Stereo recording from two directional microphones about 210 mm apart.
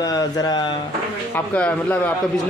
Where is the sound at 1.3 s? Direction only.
10° left (ahead or behind).